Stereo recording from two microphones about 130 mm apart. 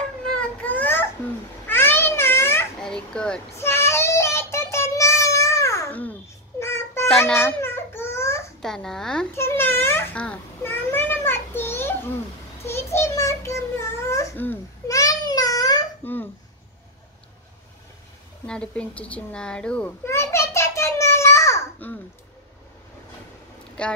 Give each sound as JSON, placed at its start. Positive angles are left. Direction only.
{"t": 0.4, "sound": "baby cry", "side_deg": 10}
{"t": 1.7, "sound": "a sound", "side_deg": 15}
{"t": 2.8, "sound": "a sound", "side_deg": 5}
{"t": 3.5, "sound": "child singing", "side_deg": 20}
{"t": 6.6, "sound": "music", "side_deg": 20}
{"t": 7.3, "sound": "babbling", "side_deg": 15}
{"t": 8.6, "sound": "speech", "side_deg": 5}
{"t": 9.3, "sound": "babbling", "side_deg": 20}
{"t": 12.6, "sound": "a sound", "side_deg": 20}
{"t": 15.0, "sound": "child singing", "side_deg": 25}
{"t": 16.0, "sound": "babbling", "side_deg": 15}
{"t": 18.5, "sound": "speech", "side_deg": 10}
{"t": 20.1, "sound": "a sound", "side_deg": 20}
{"t": 23.8, "sound": "speech", "side_deg": 10}